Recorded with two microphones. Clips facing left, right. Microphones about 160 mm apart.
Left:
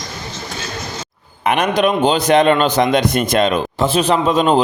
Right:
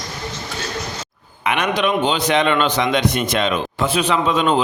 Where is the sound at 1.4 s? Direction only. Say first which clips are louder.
Left 4 dB; 40° left (ahead or behind).